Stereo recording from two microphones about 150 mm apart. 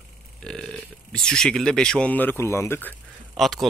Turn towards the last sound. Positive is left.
turn(degrees=0)  # may be behind; listen again after turning